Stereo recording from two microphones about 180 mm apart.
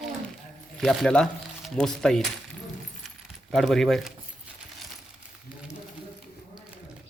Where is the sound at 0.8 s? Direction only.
Centre (ahead or behind).